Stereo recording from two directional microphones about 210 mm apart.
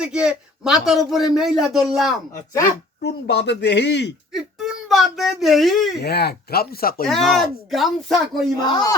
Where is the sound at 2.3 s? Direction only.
15° left (ahead or behind).